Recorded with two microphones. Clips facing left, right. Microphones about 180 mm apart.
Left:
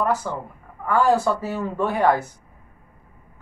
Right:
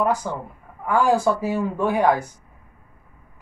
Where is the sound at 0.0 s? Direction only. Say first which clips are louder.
Right 1 dB; 15° right (ahead or behind).